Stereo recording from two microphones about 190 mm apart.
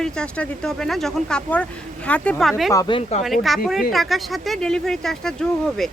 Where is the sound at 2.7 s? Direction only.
20° left (ahead or behind).